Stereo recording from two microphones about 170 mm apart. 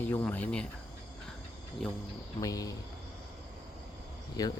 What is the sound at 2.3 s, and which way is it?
Speech, 20° left (ahead or behind).